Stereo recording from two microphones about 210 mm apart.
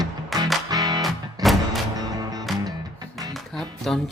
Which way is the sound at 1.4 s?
Centre (ahead or behind).